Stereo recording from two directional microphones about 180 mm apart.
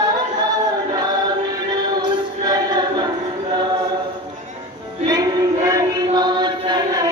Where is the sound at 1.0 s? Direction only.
20° right (ahead or behind).